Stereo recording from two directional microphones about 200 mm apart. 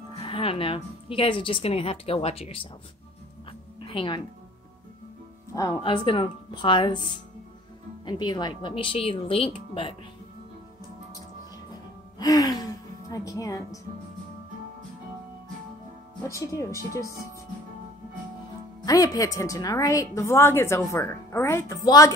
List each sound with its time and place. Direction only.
0.1 s a woman's voice: 30° left (ahead or behind)
3.8 s speech: 25° left (ahead or behind)
5.5 s a woman's voice: 15° left (ahead or behind)
11.7 s music: 20° left (ahead or behind)
13.1 s a woman's voice: 15° left (ahead or behind)
16.3 s a woman's voice: 15° left (ahead or behind)
18.9 s a woman's voice: 15° left (ahead or behind)